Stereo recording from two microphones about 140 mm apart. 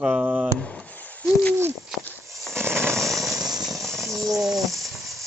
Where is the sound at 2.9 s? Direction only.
Centre (ahead or behind).